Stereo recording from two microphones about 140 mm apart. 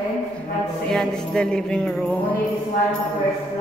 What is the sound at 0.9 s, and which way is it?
Music, 5° left (ahead or behind).